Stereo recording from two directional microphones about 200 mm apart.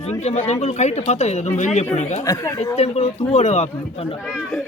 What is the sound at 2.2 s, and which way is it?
Speech, 15° left (ahead or behind).